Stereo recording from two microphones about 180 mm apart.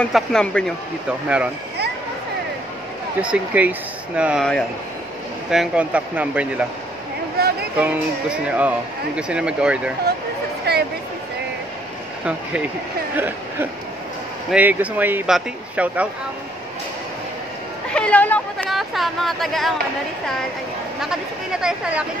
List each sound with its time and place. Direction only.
0.0 s speech: 5° left (ahead or behind)
1.0 s speech: 5° right (ahead or behind)
3.2 s speech: 5° right (ahead or behind)
5.5 s speech: 5° right (ahead or behind)
7.4 s a sound: 60° right (ahead or behind)
7.7 s speech: 10° right (ahead or behind)
10.7 s a sound: 65° right (ahead or behind)
13.1 s speech: 10° right (ahead or behind)
17.9 s speech: 5° left (ahead or behind)
21.0 s speech: 5° right (ahead or behind)